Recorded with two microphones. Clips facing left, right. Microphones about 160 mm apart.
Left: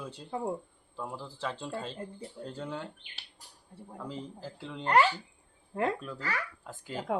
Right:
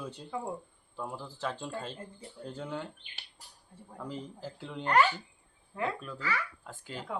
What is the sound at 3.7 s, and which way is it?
Speech, 30° left (ahead or behind).